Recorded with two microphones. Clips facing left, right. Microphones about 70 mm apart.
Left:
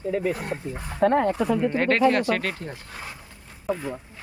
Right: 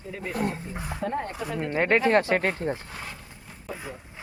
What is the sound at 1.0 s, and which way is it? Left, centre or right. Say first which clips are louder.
Speech: left 10 dB; left.